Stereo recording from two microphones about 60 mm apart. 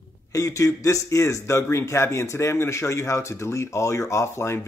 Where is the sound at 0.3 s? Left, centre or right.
Left.